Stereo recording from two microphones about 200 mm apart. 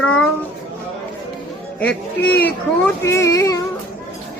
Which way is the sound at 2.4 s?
10° left (ahead or behind).